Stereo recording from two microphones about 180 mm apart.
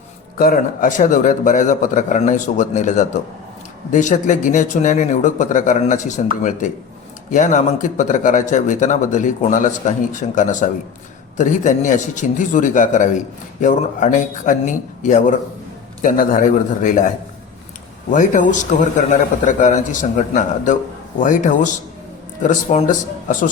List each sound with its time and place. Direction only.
0.3 s speech: 55° left (ahead or behind)
18.1 s speech: 45° left (ahead or behind)